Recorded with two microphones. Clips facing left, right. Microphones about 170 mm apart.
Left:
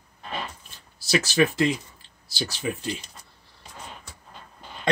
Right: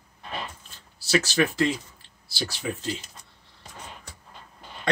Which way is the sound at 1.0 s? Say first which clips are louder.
Left 1 dB; 15° left (ahead or behind).